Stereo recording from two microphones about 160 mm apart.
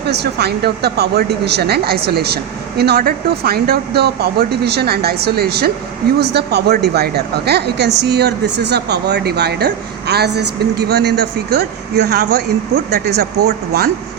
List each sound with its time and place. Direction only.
0.1 s speech: 90° right
6.1 s speech: 90° right